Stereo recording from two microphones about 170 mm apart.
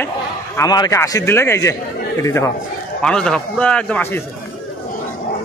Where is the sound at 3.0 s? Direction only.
5° left (ahead or behind).